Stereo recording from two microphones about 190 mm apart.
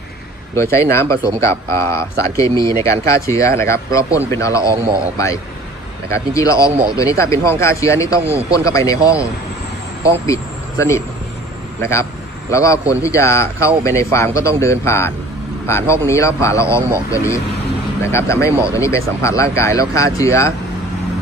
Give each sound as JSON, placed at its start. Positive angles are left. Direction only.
{"t": 0.6, "sound": "a man's voice", "side_deg": 15}